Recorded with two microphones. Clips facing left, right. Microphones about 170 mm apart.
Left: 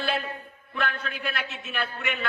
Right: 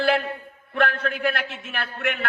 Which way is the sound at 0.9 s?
50° right (ahead or behind).